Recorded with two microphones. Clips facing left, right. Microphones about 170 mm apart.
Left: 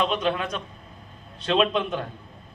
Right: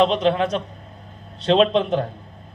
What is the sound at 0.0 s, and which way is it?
A man's voice, 30° right (ahead or behind).